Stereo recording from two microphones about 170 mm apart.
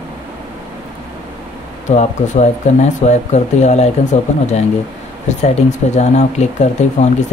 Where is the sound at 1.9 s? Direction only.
45° left (ahead or behind).